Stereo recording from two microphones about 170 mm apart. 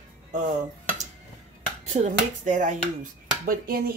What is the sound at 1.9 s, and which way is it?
Speech, 45° right (ahead or behind).